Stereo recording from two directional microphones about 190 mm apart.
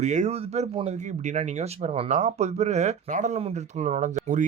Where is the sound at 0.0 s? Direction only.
40° right (ahead or behind).